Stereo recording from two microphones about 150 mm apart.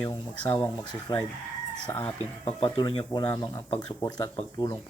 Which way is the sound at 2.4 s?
40° left (ahead or behind).